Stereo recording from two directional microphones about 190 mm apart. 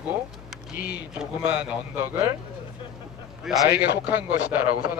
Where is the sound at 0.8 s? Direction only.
55° left (ahead or behind).